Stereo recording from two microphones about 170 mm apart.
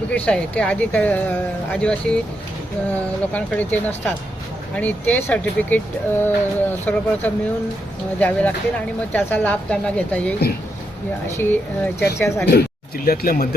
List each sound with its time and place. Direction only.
0.1 s speech: 5° left (ahead or behind)
11.3 s speech: 15° left (ahead or behind)
13.1 s speech: 60° left (ahead or behind)